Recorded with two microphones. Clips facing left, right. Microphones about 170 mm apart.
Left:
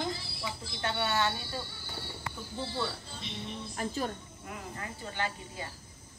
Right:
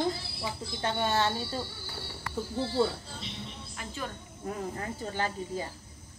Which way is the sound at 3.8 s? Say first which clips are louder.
Left 5 dB; 40° left (ahead or behind).